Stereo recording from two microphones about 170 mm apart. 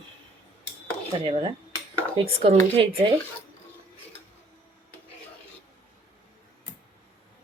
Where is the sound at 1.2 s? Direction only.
35° right (ahead or behind).